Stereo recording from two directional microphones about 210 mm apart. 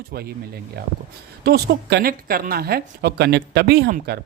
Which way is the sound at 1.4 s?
50° right (ahead or behind).